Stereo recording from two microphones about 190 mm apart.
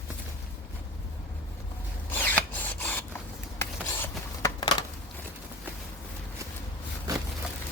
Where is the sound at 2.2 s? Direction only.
10° left (ahead or behind).